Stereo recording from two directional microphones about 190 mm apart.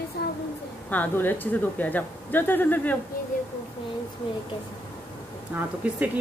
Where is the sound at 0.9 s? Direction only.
10° left (ahead or behind).